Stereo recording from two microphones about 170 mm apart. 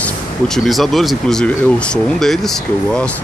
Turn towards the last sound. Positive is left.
turn(degrees=0)  # may be behind; listen again after turning